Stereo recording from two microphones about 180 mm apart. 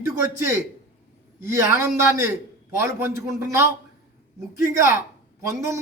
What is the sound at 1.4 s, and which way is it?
A man's voice, 15° right (ahead or behind).